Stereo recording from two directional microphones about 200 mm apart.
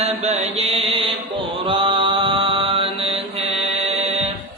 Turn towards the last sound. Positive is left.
turn(degrees=-30)  # may be behind; listen again after turning